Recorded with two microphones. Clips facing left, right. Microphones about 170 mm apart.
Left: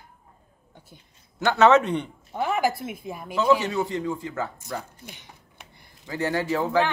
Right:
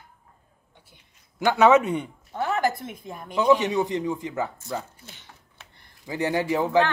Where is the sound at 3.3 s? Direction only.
15° right (ahead or behind).